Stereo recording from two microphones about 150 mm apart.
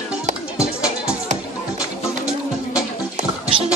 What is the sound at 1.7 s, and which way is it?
Music, 5° right (ahead or behind).